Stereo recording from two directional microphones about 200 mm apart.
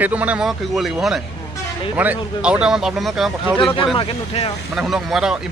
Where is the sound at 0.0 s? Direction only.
5° right (ahead or behind).